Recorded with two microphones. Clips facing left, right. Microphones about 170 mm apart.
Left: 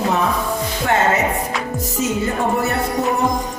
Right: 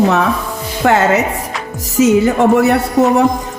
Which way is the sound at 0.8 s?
85° right.